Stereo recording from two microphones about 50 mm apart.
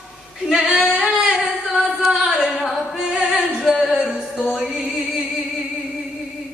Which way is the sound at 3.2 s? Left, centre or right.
Centre.